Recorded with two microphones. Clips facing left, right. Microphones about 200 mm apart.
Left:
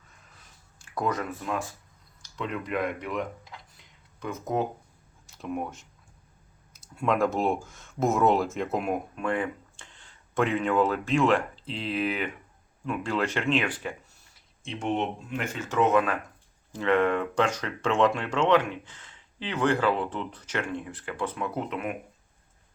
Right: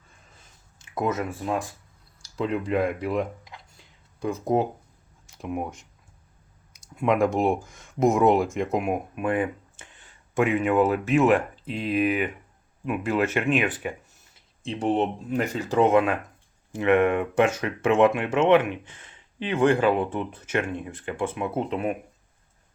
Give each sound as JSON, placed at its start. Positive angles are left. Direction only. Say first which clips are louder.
{"t": 0.8, "sound": "speech", "louder": "right 3 dB", "side_deg": -20}
{"t": 3.8, "sound": "a sound", "louder": "right 13 dB", "side_deg": -30}
{"t": 5.4, "sound": "speech", "louder": "right 2 dB", "side_deg": -10}
{"t": 6.9, "sound": "speech", "louder": "right 3 dB", "side_deg": -15}
{"t": 10.3, "sound": "speech", "louder": "right 3 dB", "side_deg": -5}
{"t": 14.6, "sound": "speech", "louder": "right 5 dB", "side_deg": -35}
{"t": 18.9, "sound": "a sound", "louder": "right 6 dB", "side_deg": -15}
{"t": 19.7, "sound": "speech", "louder": "right 4 dB", "side_deg": -20}